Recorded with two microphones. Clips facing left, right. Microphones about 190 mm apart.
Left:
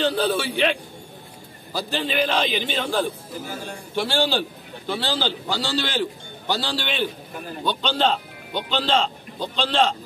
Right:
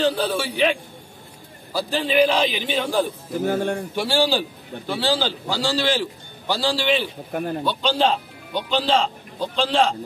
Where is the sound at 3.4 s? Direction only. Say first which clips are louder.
Right 14 dB; 60° right (ahead or behind).